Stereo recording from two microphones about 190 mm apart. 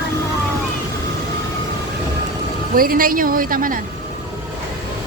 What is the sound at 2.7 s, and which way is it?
A woman's voice, 50° right (ahead or behind).